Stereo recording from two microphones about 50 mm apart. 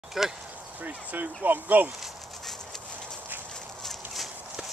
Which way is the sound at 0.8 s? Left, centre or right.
Right.